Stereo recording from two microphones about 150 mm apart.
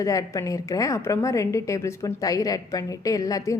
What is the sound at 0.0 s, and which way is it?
A woman's voice, 25° left (ahead or behind).